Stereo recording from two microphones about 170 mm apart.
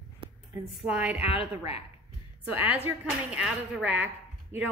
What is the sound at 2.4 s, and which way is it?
Speech, 10° right (ahead or behind).